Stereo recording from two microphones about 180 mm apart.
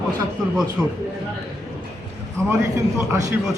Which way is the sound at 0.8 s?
5° right (ahead or behind).